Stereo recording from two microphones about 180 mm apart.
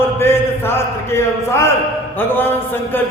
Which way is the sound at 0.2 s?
15° left (ahead or behind).